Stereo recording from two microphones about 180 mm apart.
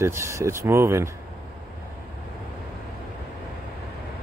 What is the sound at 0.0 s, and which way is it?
Speech, 15° right (ahead or behind).